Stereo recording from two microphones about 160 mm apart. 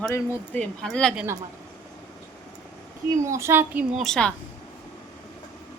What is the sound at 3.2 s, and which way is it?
Speech, 15° right (ahead or behind).